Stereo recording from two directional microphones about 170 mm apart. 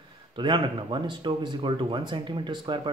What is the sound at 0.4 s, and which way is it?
Speech, 30° right (ahead or behind).